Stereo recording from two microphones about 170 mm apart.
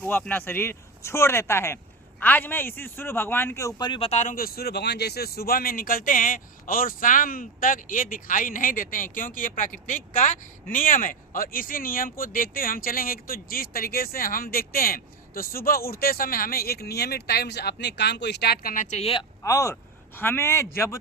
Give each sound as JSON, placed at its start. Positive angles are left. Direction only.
{"t": 0.0, "sound": "speech", "side_deg": 10}
{"t": 19.4, "sound": "speech", "side_deg": 20}